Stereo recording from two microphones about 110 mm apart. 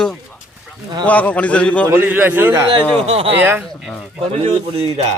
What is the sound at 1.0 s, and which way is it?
Speech, 15° left (ahead or behind).